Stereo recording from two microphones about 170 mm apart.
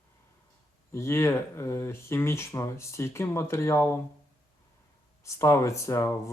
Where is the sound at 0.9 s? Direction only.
15° left (ahead or behind).